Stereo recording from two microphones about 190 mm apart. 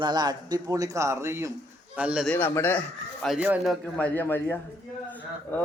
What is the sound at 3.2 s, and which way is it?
Speech, 5° right (ahead or behind).